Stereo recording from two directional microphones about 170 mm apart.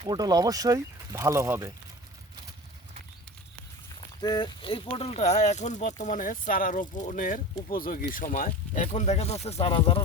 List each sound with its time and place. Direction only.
0.1 s speech: 25° right (ahead or behind)
4.2 s speech: 25° left (ahead or behind)